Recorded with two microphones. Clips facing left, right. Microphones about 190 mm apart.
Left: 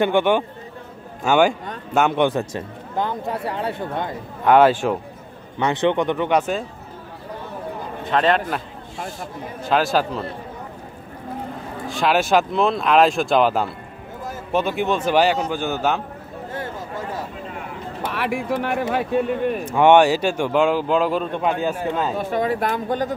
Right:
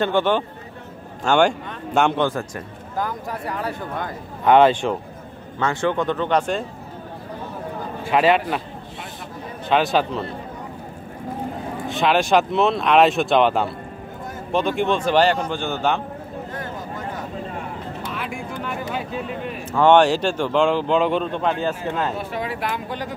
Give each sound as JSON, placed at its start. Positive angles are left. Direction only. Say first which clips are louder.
{"t": 0.0, "sound": "speech", "louder": "left 2 dB", "side_deg": 15}
{"t": 2.1, "sound": "speech", "louder": "left 3 dB", "side_deg": 20}
{"t": 4.5, "sound": "speech", "louder": "even", "side_deg": 5}
{"t": 5.6, "sound": "speech", "louder": "left 2 dB", "side_deg": 20}
{"t": 8.0, "sound": "speech", "louder": "right 1 dB", "side_deg": -5}
{"t": 9.7, "sound": "speech", "louder": "even", "side_deg": 0}
{"t": 11.9, "sound": "speech", "louder": "even", "side_deg": 0}
{"t": 16.5, "sound": "a sound", "louder": "left 4 dB", "side_deg": 30}
{"t": 18.0, "sound": "speech", "louder": "left 9 dB", "side_deg": 65}
{"t": 19.7, "sound": "speech", "louder": "even", "side_deg": 15}
{"t": 22.3, "sound": "speech", "louder": "left 5 dB", "side_deg": 45}